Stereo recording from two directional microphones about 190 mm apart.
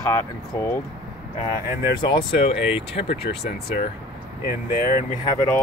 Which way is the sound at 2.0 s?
25° left (ahead or behind).